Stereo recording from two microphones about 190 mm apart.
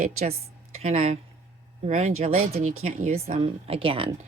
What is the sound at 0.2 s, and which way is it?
Speech, 35° right (ahead or behind).